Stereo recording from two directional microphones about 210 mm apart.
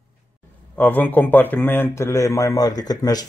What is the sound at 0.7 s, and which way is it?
Speech, 10° left (ahead or behind).